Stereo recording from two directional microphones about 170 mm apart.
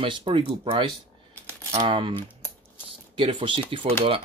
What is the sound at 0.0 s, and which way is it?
Speech, 30° right (ahead or behind).